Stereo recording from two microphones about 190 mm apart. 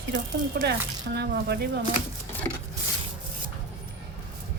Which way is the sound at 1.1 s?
60° right (ahead or behind).